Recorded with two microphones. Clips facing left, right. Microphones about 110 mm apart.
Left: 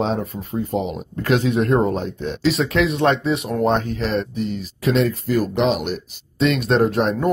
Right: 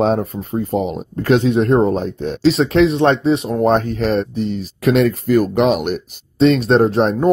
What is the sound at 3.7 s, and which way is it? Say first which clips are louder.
Speech: right 5 dB; 45° right (ahead or behind).